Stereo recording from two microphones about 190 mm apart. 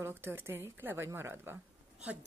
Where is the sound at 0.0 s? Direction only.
10° right (ahead or behind).